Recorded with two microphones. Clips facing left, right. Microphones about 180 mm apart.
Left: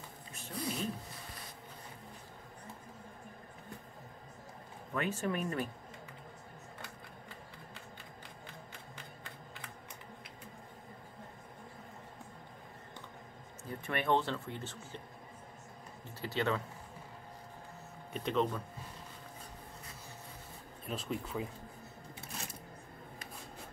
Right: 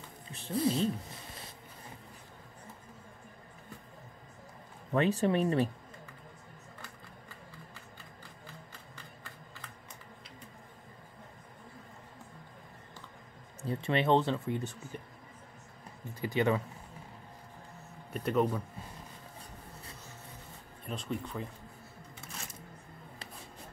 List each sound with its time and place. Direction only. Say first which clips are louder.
0.3 s speech: right 9 dB; 30° right (ahead or behind)
4.9 s speech: right 7 dB; 30° right (ahead or behind)
8.9 s a sound: left 1 dB; 20° left (ahead or behind)
13.7 s speech: right 5 dB; 25° right (ahead or behind)
16.2 s speech: right 5 dB; 15° right (ahead or behind)
18.1 s speech: right 3 dB; 10° right (ahead or behind)
20.8 s speech: right 1 dB; centre (ahead or behind)